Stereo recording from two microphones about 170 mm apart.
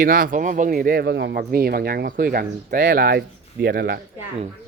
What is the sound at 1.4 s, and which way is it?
Speech, 60° right (ahead or behind).